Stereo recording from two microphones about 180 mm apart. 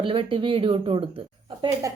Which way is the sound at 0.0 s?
30° right (ahead or behind).